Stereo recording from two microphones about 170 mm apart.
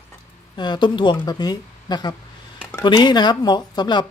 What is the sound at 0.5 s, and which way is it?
Speech, 25° left (ahead or behind).